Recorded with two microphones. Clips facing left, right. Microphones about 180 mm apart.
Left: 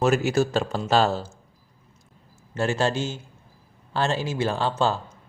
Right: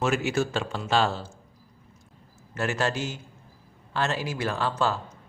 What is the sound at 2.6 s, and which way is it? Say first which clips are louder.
Speech: left 4 dB; 30° left (ahead or behind).